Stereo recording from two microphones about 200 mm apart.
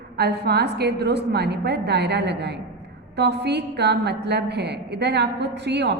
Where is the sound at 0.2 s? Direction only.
55° right (ahead or behind).